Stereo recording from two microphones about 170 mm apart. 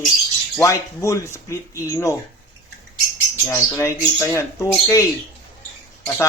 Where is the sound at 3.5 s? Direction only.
15° left (ahead or behind).